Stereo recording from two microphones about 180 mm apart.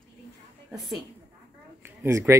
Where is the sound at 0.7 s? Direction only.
Centre (ahead or behind).